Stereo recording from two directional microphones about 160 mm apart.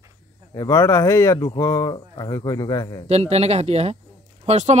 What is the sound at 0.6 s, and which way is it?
Speech, 20° left (ahead or behind).